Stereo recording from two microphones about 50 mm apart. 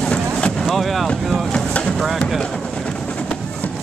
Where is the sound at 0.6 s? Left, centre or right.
Centre.